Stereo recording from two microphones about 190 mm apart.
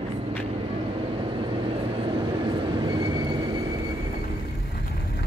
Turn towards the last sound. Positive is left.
turn(degrees=-25)  # may be behind; listen again after turning